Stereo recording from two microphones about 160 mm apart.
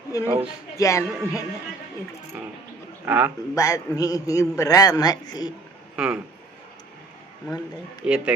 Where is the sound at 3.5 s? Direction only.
20° left (ahead or behind).